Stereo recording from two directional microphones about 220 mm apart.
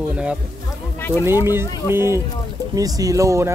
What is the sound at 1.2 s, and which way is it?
Speech, 10° right (ahead or behind).